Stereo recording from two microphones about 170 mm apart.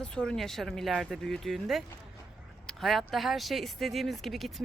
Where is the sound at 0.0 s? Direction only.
5° left (ahead or behind).